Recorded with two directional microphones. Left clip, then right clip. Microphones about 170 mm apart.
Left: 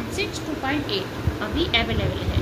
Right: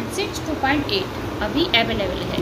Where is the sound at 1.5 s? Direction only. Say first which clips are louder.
Right 4 dB; 5° right (ahead or behind).